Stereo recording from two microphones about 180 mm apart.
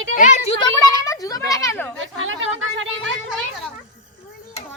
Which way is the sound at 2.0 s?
90° right.